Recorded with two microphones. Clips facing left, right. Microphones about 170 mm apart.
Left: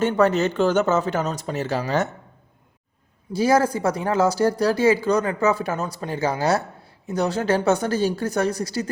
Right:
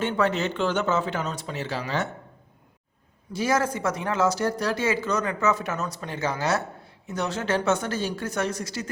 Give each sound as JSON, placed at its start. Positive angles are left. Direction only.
{"t": 0.0, "sound": "speech", "side_deg": 40}
{"t": 3.3, "sound": "speech", "side_deg": 35}